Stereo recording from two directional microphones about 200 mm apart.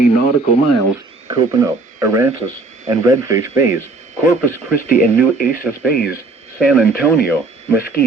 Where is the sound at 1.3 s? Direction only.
15° right (ahead or behind).